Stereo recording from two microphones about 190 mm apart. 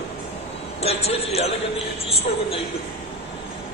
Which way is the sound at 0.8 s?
35° left (ahead or behind).